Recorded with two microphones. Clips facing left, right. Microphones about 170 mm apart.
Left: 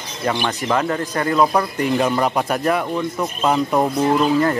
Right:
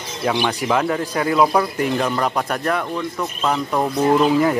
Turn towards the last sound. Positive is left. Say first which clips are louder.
# right 1 dB
turn(degrees=-5)  # may be behind; listen again after turning